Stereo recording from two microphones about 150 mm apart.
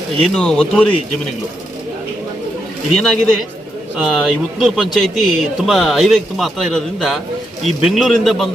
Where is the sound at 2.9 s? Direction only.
Centre (ahead or behind).